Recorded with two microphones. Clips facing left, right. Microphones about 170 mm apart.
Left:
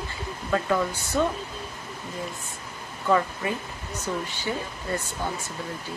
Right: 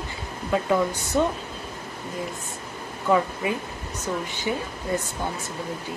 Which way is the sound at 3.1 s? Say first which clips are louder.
Right 2 dB; 15° right (ahead or behind).